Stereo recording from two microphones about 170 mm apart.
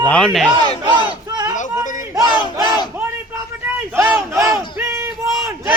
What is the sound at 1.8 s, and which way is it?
Crowd, 50° left (ahead or behind).